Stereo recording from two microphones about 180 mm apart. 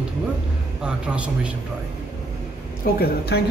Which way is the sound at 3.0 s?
60° left (ahead or behind).